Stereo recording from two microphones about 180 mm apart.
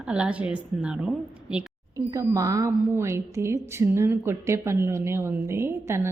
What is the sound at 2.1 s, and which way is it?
A woman's voice, 20° right (ahead or behind).